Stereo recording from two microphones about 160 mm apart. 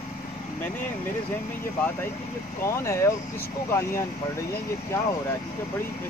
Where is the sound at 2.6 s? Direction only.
20° left (ahead or behind).